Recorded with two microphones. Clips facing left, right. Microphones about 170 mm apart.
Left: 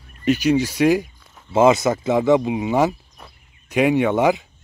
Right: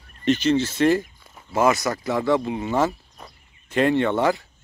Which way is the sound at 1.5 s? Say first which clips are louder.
Left 5 dB; 20° left (ahead or behind).